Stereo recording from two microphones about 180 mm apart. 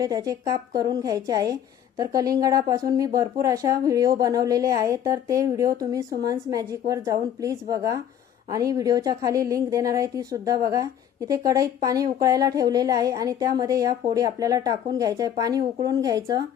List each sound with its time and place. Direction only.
0.0 s speech: 20° right (ahead or behind)